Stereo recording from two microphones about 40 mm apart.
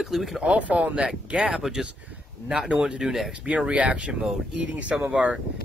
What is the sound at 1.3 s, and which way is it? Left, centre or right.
Speech, right.